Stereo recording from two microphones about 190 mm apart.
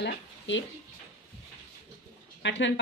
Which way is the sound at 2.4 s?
70° left (ahead or behind).